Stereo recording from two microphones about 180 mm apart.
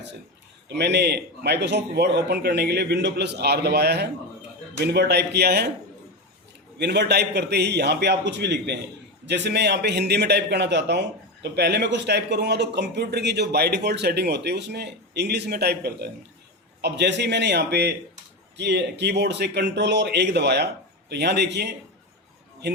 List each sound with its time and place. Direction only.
0.7 s a man's voice: 70° right (ahead or behind)
6.7 s a man's voice: 70° right (ahead or behind)